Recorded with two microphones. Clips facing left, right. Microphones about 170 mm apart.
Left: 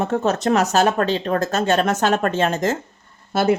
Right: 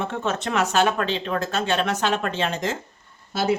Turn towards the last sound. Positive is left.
turn(degrees=55)  # may be behind; listen again after turning